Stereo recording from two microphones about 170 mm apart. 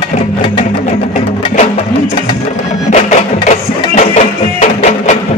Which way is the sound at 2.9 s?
45° left (ahead or behind).